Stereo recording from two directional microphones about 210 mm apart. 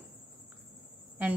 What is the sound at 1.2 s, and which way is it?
Speech, 10° right (ahead or behind).